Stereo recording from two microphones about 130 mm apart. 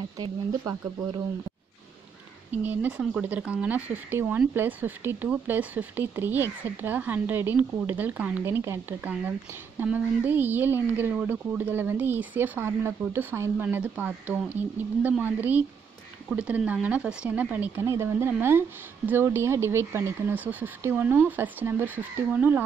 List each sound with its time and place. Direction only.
0.2 s speech: 30° right (ahead or behind)
2.5 s speech: 15° right (ahead or behind)